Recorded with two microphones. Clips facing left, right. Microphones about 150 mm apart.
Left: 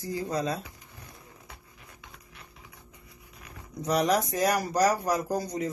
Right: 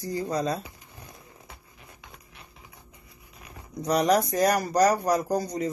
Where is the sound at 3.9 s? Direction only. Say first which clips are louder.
Right 3 dB; 5° left (ahead or behind).